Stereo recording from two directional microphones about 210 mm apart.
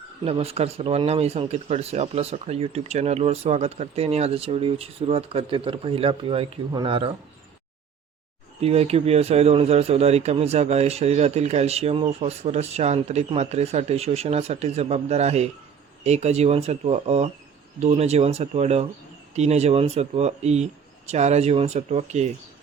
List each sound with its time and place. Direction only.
0.3 s speech: 30° right (ahead or behind)
8.6 s a man's voice: 30° right (ahead or behind)